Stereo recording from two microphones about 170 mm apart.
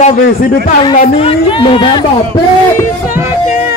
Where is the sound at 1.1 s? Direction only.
30° left (ahead or behind).